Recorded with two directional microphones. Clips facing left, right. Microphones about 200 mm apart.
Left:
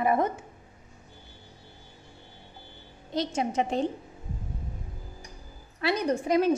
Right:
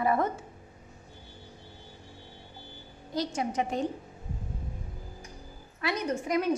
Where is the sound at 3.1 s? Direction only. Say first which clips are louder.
Left 2 dB; 25° left (ahead or behind).